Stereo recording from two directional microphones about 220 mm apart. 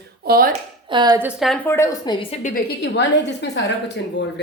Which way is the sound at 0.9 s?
20° right (ahead or behind).